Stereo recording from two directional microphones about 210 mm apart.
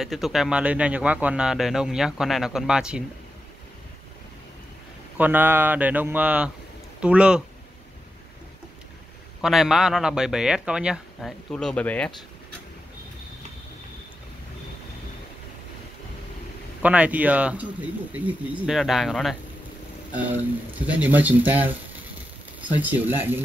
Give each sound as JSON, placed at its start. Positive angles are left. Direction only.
{"t": 0.0, "sound": "speech", "side_deg": 0}
{"t": 5.1, "sound": "speech", "side_deg": -10}
{"t": 9.4, "sound": "speech", "side_deg": 0}
{"t": 16.8, "sound": "speech", "side_deg": -5}
{"t": 20.8, "sound": "speech", "side_deg": -10}